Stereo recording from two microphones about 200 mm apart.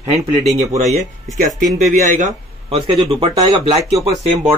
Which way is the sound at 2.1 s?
40° right (ahead or behind).